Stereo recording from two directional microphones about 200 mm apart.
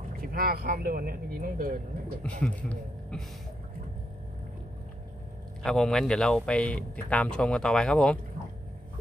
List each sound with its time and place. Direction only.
0.2 s speech: 45° right (ahead or behind)
2.2 s speech: 5° left (ahead or behind)
5.6 s speech: centre (ahead or behind)